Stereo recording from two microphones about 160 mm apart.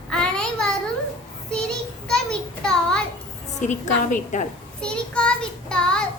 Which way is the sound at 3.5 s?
50° left (ahead or behind).